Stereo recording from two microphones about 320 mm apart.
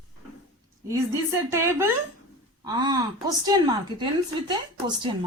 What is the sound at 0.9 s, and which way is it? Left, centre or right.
A woman's voice, centre.